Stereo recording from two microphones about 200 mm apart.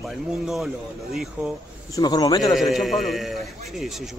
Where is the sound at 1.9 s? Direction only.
20° left (ahead or behind).